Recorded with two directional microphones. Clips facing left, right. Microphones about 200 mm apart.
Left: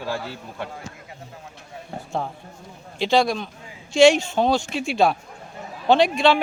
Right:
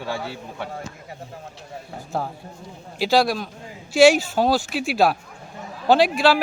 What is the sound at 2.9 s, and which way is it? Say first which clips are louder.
Speech: even; 5° right (ahead or behind).